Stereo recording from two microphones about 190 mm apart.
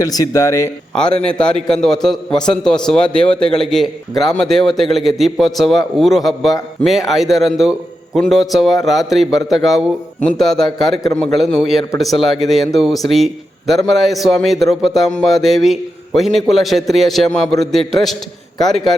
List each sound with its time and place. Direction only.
0.0 s speech: 20° left (ahead or behind)
0.9 s a man's voice: 5° left (ahead or behind)